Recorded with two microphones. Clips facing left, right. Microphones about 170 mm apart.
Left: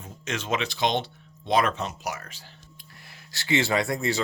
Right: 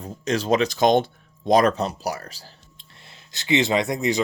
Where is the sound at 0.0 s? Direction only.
35° right (ahead or behind).